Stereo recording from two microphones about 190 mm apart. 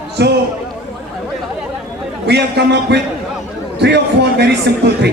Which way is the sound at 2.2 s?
60° right (ahead or behind).